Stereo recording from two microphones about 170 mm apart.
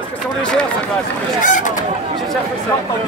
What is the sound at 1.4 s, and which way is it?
Speech, 50° left (ahead or behind).